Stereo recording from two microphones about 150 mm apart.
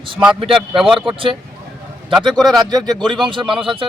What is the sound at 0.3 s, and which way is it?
Speech, 35° right (ahead or behind).